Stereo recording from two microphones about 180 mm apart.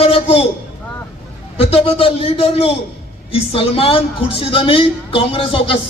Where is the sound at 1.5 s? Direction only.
35° left (ahead or behind).